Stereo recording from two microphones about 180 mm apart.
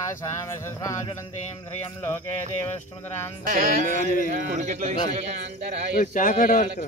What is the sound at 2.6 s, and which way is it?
Speech, 10° left (ahead or behind).